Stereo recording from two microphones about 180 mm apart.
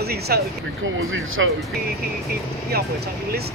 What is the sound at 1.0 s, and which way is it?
Speech, 90° right.